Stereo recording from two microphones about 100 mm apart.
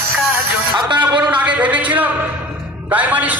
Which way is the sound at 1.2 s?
15° right (ahead or behind).